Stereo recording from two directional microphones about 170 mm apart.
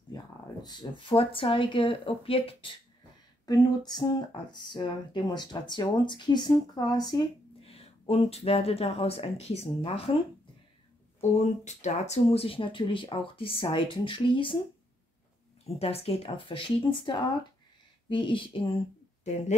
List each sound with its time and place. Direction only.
0.1 s speech: 25° left (ahead or behind)
11.1 s speech: 40° left (ahead or behind)
15.6 s speech: 35° left (ahead or behind)
19.2 s speech: 40° left (ahead or behind)